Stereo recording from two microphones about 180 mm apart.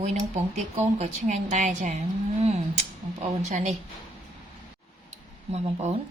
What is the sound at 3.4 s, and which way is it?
Speech, 40° right (ahead or behind).